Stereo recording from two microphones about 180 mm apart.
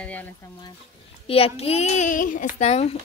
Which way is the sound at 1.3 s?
35° left (ahead or behind).